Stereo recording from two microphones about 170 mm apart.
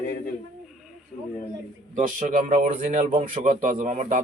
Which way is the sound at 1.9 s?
50° right (ahead or behind).